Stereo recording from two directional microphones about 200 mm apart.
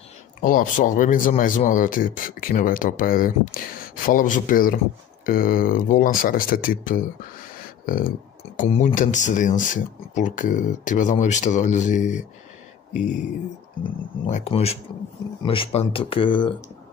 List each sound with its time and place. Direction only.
0.4 s speech: 40° left (ahead or behind)
14.2 s speech: 35° left (ahead or behind)